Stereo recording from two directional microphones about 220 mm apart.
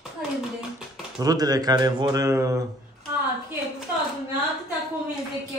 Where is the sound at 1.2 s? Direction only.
15° right (ahead or behind).